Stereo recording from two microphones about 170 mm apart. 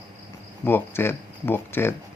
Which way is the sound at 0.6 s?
10° left (ahead or behind).